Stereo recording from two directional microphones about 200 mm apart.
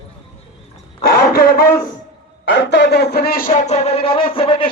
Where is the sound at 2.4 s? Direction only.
65° left (ahead or behind).